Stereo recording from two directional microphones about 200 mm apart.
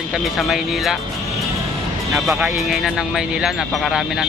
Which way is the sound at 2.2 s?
5° right (ahead or behind).